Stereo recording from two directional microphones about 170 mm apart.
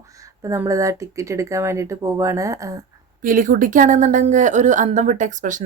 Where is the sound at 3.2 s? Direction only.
55° right (ahead or behind).